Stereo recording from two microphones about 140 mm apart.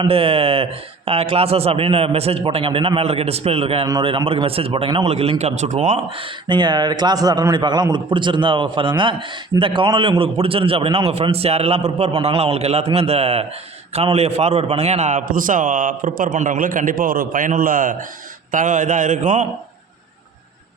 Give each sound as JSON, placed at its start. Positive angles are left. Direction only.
{"t": 0.0, "sound": "a man's voice", "side_deg": -40}
{"t": 6.1, "sound": "a man's voice", "side_deg": -40}
{"t": 18.5, "sound": "a man's voice", "side_deg": -65}